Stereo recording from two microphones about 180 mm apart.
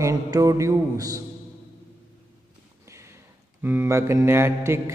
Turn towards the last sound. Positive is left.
turn(degrees=-15)  # may be behind; listen again after turning